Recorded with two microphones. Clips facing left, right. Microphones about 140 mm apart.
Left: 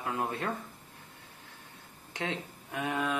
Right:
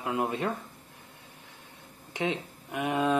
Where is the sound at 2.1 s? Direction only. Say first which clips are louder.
Right 5 dB; 20° right (ahead or behind).